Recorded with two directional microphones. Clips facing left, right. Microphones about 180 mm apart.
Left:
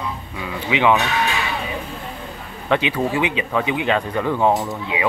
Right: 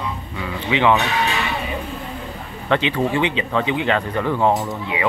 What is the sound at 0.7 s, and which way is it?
Speech, 15° left (ahead or behind).